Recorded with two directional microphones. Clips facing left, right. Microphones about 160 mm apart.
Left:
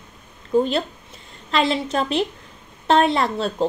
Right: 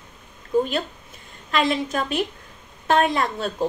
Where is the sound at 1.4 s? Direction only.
30° left (ahead or behind).